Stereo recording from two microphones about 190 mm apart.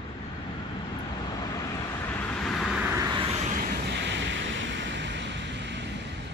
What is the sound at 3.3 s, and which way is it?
Vehicle, 40° right (ahead or behind).